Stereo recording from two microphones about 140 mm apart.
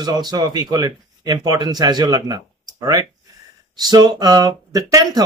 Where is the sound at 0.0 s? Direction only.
30° right (ahead or behind).